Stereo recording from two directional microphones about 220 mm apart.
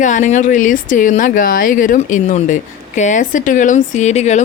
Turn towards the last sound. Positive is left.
turn(degrees=30)  # may be behind; listen again after turning